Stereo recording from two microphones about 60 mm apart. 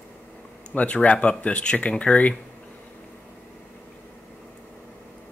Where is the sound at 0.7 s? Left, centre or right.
Left.